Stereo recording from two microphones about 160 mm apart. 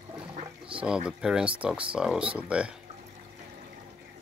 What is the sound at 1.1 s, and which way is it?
Speech, 5° right (ahead or behind).